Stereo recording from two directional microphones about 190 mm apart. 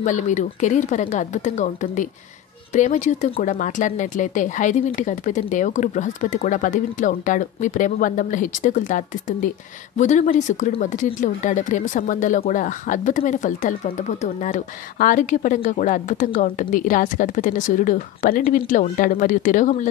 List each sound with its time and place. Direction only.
0.0 s speech: 40° left (ahead or behind)